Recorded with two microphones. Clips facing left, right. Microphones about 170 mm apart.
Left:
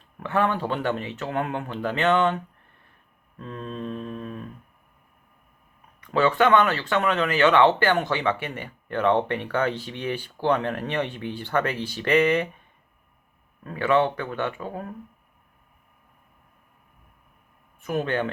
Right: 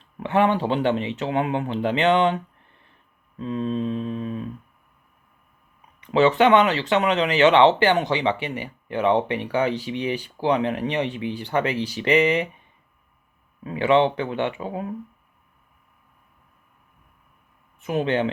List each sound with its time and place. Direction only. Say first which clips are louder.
0.2 s speech: right 4 dB; 20° right (ahead or behind)
6.1 s speech: right 3 dB; 20° right (ahead or behind)
13.7 s speech: right 3 dB; 15° right (ahead or behind)